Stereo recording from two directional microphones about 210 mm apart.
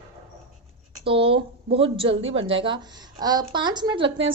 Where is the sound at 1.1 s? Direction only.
25° right (ahead or behind).